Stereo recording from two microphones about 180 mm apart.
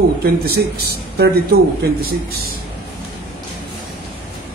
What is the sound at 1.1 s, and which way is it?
A man's voice, 65° right (ahead or behind).